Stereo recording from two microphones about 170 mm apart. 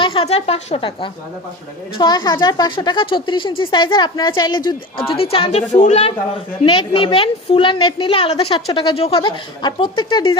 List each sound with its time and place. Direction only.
0.0 s a woman's voice: 30° left (ahead or behind)
6.7 s a woman's voice: 30° left (ahead or behind)